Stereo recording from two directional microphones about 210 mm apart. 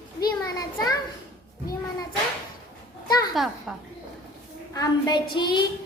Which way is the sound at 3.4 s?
Centre (ahead or behind).